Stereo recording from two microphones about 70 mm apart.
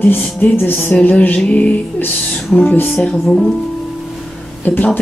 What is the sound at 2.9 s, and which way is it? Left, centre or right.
Speech, centre.